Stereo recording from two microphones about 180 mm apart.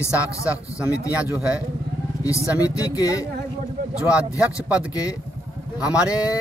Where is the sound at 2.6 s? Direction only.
20° left (ahead or behind).